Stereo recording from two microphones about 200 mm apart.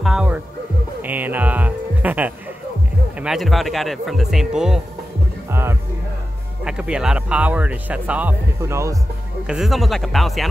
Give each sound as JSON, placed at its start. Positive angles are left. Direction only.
{"t": 0.0, "sound": "music", "side_deg": -5}
{"t": 3.2, "sound": "speech", "side_deg": 0}
{"t": 9.5, "sound": "speech", "side_deg": 0}